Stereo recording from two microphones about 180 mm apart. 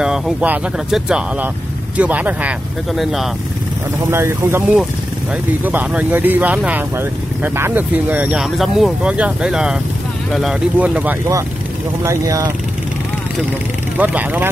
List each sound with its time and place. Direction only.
0.0 s speech: 5° right (ahead or behind)
4.1 s speech: 15° right (ahead or behind)
13.9 s speech: 10° right (ahead or behind)